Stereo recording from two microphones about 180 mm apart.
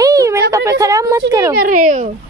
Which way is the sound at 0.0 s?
20° right (ahead or behind).